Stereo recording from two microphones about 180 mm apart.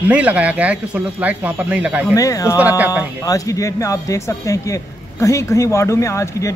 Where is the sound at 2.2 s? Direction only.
20° left (ahead or behind).